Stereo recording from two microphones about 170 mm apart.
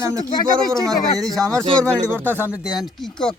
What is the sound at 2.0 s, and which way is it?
Speech, 10° right (ahead or behind).